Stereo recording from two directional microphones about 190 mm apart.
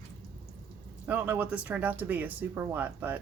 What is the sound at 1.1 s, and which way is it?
Speech, 10° right (ahead or behind).